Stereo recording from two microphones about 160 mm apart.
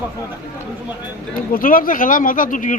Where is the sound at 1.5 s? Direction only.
60° left (ahead or behind).